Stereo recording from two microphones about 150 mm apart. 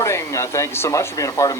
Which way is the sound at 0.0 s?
20° left (ahead or behind).